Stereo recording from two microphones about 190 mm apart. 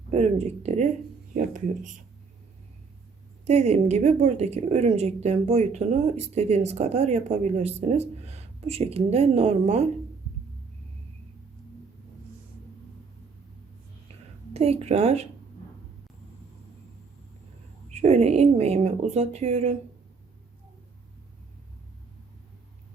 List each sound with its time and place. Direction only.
0.1 s speech: 35° right (ahead or behind)
3.4 s speech: 35° right (ahead or behind)
14.5 s speech: 35° right (ahead or behind)
17.8 s speech: 35° right (ahead or behind)